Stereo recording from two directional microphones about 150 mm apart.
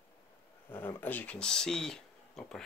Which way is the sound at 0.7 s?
15° left (ahead or behind).